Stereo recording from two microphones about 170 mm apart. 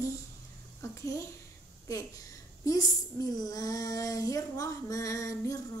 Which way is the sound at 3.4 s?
20° left (ahead or behind).